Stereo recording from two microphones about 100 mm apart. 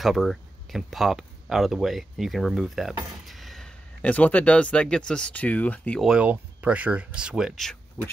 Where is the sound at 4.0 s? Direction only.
15° left (ahead or behind).